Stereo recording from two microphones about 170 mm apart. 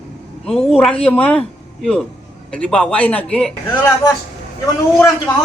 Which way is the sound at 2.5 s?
5° left (ahead or behind).